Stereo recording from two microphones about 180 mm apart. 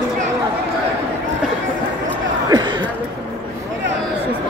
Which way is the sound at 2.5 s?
25° right (ahead or behind).